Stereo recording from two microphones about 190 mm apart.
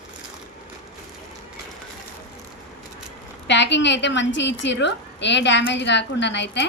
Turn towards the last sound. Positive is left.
turn(degrees=70)  # may be behind; listen again after turning